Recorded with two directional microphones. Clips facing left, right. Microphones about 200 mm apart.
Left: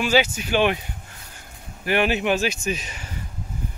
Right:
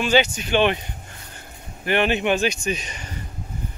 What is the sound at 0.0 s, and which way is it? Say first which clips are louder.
Speech: right 1 dB; 5° left (ahead or behind).